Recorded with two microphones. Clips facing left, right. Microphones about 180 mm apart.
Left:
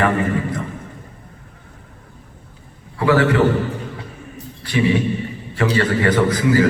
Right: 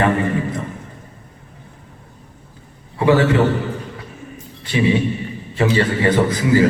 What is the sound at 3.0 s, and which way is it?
Speech, 20° right (ahead or behind).